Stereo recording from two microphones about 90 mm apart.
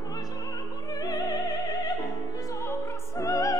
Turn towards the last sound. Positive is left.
turn(degrees=40)  # may be behind; listen again after turning